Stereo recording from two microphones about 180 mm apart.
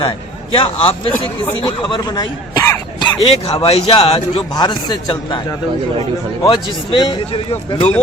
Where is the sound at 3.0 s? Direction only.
30° left (ahead or behind).